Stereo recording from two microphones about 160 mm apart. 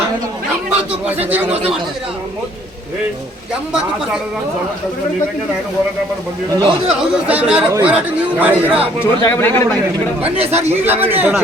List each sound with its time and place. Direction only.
0.8 s a man's voice: 10° right (ahead or behind)
6.5 s a man's voice: 30° right (ahead or behind)
6.8 s a man's voice: 5° right (ahead or behind)
9.0 s speech: 15° left (ahead or behind)
10.3 s speech: 40° right (ahead or behind)
10.6 s a man's voice: 10° right (ahead or behind)